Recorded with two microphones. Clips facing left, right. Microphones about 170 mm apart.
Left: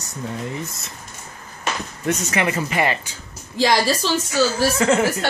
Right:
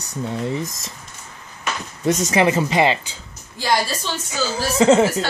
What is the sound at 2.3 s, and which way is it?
Speech, 30° right (ahead or behind).